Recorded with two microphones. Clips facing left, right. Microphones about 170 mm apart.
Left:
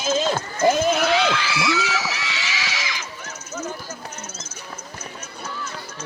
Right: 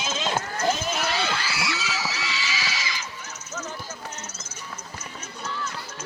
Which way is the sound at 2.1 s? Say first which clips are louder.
Left 2 dB; 90° left.